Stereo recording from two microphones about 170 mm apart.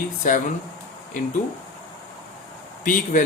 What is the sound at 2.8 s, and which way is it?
Speech, 50° left (ahead or behind).